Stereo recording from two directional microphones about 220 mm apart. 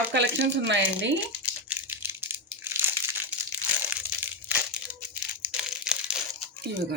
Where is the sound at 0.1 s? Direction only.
55° right (ahead or behind).